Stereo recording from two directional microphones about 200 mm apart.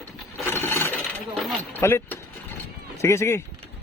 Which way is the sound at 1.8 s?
10° left (ahead or behind).